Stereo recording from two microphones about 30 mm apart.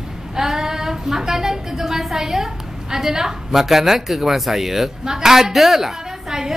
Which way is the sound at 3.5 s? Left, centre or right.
Centre.